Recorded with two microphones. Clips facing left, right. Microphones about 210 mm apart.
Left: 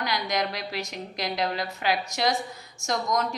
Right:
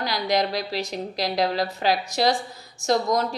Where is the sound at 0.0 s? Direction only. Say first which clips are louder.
Right 4 dB; 35° right (ahead or behind).